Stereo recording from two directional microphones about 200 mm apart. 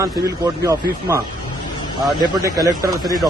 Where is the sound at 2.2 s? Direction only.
20° right (ahead or behind).